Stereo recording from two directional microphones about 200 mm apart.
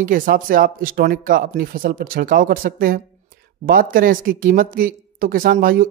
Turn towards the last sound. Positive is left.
turn(degrees=-45)  # may be behind; listen again after turning